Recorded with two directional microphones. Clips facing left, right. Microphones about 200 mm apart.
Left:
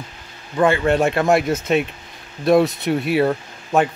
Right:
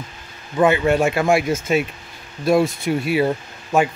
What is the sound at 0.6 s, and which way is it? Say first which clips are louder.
Speech: right 1 dB; 20° right (ahead or behind).